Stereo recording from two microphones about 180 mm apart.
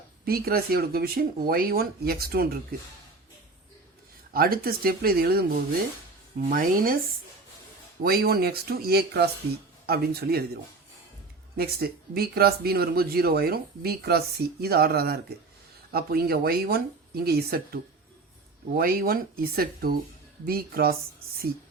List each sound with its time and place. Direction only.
0.3 s speech: 60° right (ahead or behind)
4.3 s speech: 55° right (ahead or behind)
6.5 s speech: 50° right (ahead or behind)
8.0 s speech: 60° right (ahead or behind)